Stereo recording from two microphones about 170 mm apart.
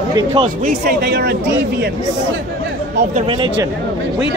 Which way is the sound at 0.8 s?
75° right (ahead or behind).